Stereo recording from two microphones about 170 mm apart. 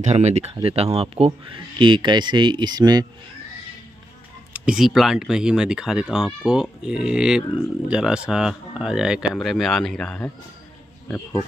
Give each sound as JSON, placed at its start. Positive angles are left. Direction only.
{"t": 0.0, "sound": "speech", "side_deg": -40}
{"t": 4.6, "sound": "speech", "side_deg": -5}